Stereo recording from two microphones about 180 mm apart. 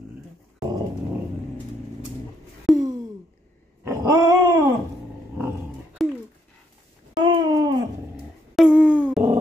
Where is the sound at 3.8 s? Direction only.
20° right (ahead or behind).